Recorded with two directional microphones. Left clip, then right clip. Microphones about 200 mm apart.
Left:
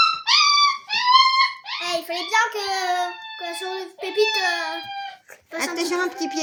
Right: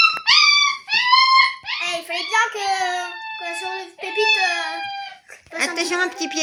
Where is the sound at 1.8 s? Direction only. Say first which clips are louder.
Left 1 dB; 90° left.